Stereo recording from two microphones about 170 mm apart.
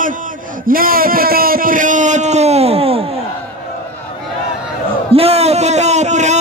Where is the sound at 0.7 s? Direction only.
55° right (ahead or behind); by 3.2 s 35° right (ahead or behind).